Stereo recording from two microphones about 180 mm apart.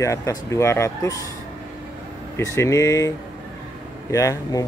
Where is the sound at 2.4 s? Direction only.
15° left (ahead or behind).